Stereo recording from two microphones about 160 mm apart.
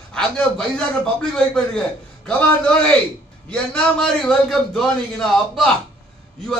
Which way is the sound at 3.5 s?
5° left (ahead or behind).